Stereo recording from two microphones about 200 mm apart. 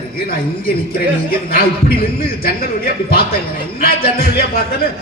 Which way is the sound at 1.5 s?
50° left (ahead or behind).